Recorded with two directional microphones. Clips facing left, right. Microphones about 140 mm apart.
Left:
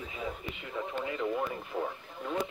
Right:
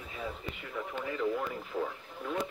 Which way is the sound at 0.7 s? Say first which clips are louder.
Left 1 dB; 15° left (ahead or behind).